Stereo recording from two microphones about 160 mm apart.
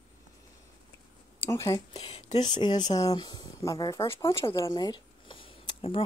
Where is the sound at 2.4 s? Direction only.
25° left (ahead or behind).